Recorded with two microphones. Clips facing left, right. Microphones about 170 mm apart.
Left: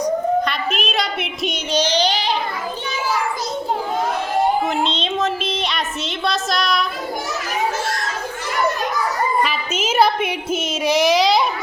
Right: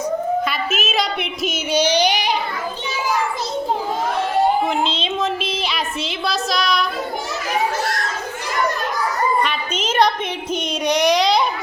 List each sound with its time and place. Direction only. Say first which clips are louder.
0.4 s a sound: even; 5° right (ahead or behind)
4.8 s a woman's voice: left 1 dB; centre (ahead or behind)
9.4 s speech: left 1 dB; 5° left (ahead or behind)